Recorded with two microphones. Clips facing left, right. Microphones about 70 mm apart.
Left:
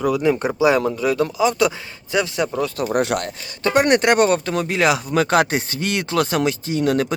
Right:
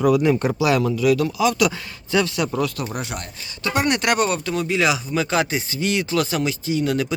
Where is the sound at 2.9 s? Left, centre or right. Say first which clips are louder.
Left 10 dB; left.